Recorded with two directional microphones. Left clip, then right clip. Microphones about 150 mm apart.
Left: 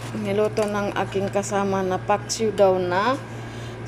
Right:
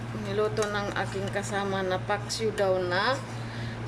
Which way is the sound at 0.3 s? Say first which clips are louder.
Left 6 dB; 10° left (ahead or behind).